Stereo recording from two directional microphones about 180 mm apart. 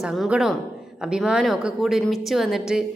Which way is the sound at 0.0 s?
Centre (ahead or behind).